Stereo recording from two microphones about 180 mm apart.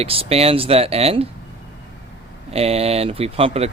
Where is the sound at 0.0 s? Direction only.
35° right (ahead or behind).